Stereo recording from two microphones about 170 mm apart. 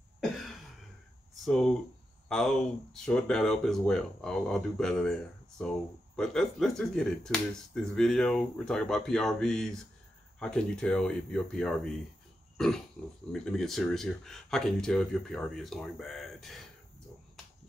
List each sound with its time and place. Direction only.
1.4 s speech: 5° left (ahead or behind)
6.1 s speech: 5° left (ahead or behind)
12.5 s pig: centre (ahead or behind)
13.3 s speech: 5° left (ahead or behind)